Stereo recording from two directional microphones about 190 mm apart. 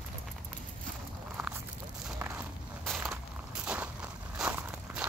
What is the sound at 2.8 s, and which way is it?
Walk, centre (ahead or behind).